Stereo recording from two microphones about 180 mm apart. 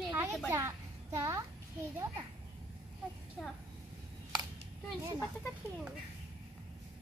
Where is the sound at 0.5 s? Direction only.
15° right (ahead or behind).